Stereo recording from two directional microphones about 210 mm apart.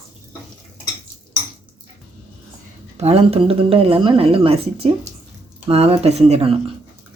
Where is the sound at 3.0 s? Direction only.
30° right (ahead or behind).